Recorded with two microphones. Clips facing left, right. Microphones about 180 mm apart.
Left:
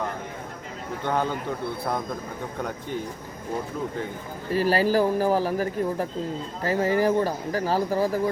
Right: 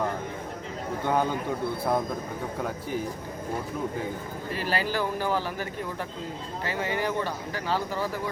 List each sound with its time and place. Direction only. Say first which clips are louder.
1.0 s speech: even; 10° right (ahead or behind)
2.6 s speech: left 1 dB; 5° right (ahead or behind)
4.5 s speech: left 8 dB; 35° left (ahead or behind)